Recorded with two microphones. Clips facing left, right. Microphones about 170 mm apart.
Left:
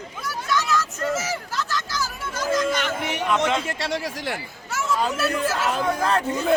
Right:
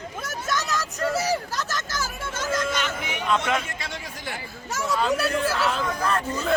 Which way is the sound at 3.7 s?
75° left (ahead or behind).